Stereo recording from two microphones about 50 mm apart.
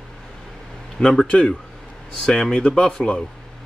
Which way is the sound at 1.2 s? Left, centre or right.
Left.